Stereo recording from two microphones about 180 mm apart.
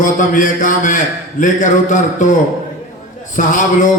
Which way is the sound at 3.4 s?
45° left (ahead or behind).